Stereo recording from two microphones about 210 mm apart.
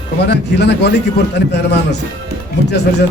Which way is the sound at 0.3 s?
55° left (ahead or behind).